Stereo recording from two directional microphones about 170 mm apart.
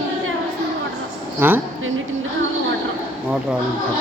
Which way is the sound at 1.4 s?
10° right (ahead or behind).